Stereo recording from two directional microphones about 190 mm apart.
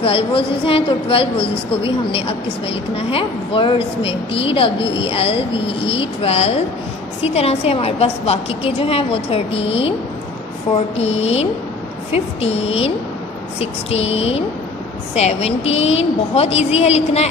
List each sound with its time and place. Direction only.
0.0 s a woman's voice: 30° left (ahead or behind)
11.0 s a woman's voice: 35° left (ahead or behind)